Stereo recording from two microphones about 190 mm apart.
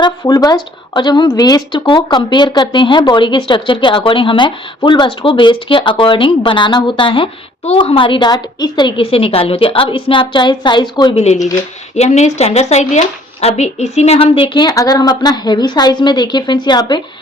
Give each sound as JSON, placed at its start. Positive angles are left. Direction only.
{"t": 0.0, "sound": "a woman's voice", "side_deg": 20}
{"t": 11.9, "sound": "a woman's voice", "side_deg": 35}